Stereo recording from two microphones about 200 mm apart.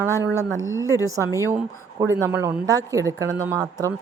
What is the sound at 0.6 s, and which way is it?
Speech, 75° right (ahead or behind).